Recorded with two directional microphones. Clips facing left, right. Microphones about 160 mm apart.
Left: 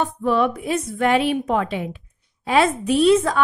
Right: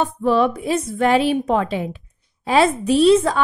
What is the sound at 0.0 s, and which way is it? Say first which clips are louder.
A woman's voice: right 2 dB; 30° right (ahead or behind).